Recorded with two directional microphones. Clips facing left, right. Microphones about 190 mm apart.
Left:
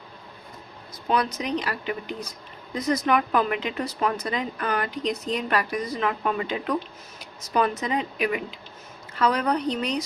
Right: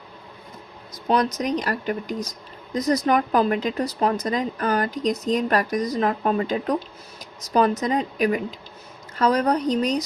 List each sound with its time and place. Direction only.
1.0 s speech: 40° right (ahead or behind)